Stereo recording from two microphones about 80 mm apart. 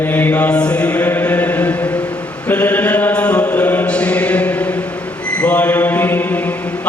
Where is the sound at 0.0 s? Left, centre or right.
Left.